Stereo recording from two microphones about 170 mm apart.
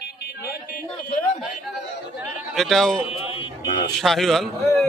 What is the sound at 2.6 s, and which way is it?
Speech, centre (ahead or behind).